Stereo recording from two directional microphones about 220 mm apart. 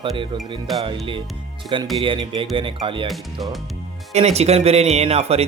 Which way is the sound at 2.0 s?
25° right (ahead or behind).